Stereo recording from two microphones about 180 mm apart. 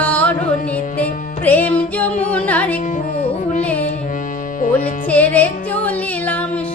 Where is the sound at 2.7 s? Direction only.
50° left (ahead or behind).